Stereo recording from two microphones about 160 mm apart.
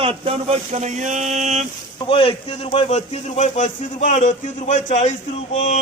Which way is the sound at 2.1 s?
35° left (ahead or behind).